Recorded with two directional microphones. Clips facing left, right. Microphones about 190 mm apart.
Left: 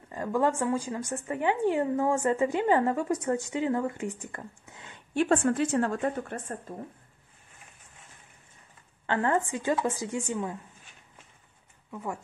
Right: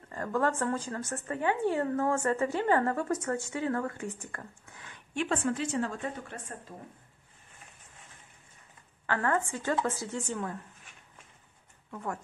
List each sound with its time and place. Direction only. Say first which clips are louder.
0.1 s speech: left 3 dB; 15° left (ahead or behind)
5.1 s a woman's voice: left 6 dB; 45° left (ahead or behind)
9.0 s speech: left 3 dB; 20° left (ahead or behind)
11.9 s speech: left 1 dB; 10° left (ahead or behind)